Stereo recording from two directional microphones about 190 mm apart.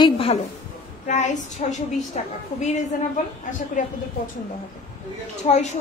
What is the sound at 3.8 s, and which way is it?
Female singing, 45° left (ahead or behind).